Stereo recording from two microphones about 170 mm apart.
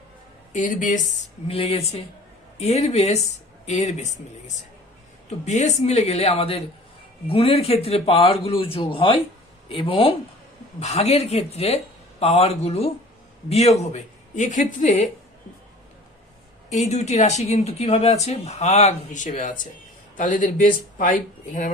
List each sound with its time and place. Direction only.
0.5 s speech: 50° left (ahead or behind)
1.5 s speech: 35° left (ahead or behind)
16.7 s speech: 40° left (ahead or behind)